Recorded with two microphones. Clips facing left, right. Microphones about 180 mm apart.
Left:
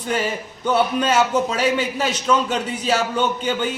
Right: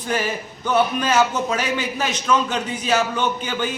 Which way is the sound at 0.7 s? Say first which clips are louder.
Even; 30° left (ahead or behind).